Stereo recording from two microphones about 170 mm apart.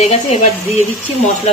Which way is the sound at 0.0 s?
40° left (ahead or behind).